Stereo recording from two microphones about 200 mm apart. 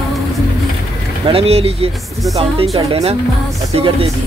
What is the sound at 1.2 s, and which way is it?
Music, 30° right (ahead or behind).